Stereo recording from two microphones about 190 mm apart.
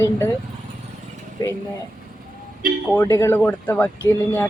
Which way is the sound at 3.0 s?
15° left (ahead or behind).